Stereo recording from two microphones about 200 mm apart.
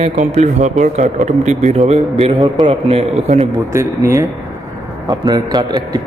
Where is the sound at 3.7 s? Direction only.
15° right (ahead or behind).